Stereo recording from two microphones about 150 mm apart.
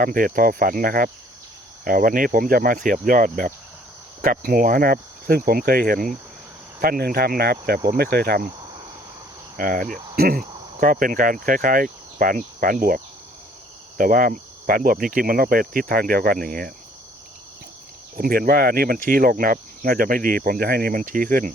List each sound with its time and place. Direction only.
0.0 s speech: 70° right (ahead or behind)
6.8 s speech: 85° right
7.9 s cricket: 90° right
9.6 s speech: 65° right (ahead or behind); by 10.4 s 90° right
10.8 s speech: 65° right (ahead or behind)
14.0 s speech: 65° right (ahead or behind)
18.2 s speech: 80° right